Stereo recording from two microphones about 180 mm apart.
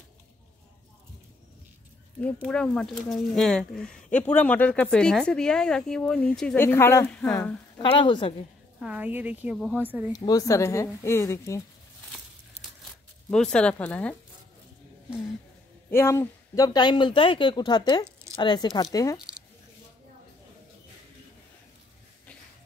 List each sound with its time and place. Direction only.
2.4 s speech: 5° left (ahead or behind)
8.0 s speech: 30° left (ahead or behind)
8.8 s speech: 10° right (ahead or behind)
10.1 s speech: 20° left (ahead or behind)
13.3 s speech: 5° left (ahead or behind)
15.9 s speech: 15° left (ahead or behind)
19.1 s squish: 5° right (ahead or behind)